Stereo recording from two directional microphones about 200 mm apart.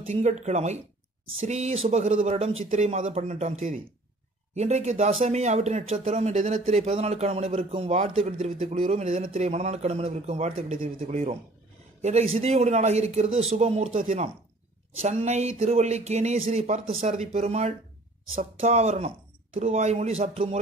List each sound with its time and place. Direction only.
0.0 s speech: 35° right (ahead or behind)